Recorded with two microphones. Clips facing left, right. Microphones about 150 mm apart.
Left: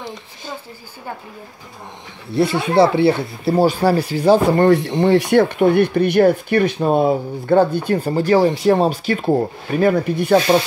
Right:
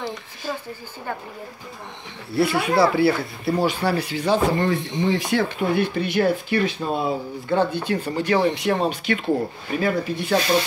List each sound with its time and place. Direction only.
2.3 s speech: 25° left (ahead or behind)
4.6 s speech: 70° left (ahead or behind); by 10.4 s 45° left (ahead or behind)